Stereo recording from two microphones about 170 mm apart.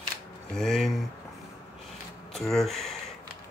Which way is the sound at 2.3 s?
Centre (ahead or behind).